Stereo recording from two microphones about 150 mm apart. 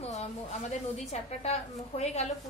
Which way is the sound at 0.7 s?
50° left (ahead or behind).